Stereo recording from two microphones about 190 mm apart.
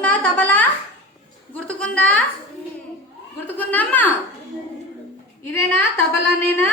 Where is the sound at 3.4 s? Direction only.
10° left (ahead or behind).